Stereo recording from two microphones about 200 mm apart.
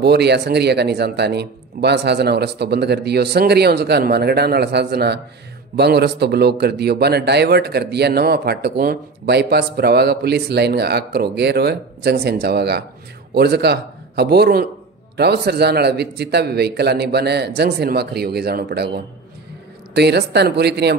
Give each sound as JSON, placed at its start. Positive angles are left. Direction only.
{"t": 0.0, "sound": "a man's voice", "side_deg": -55}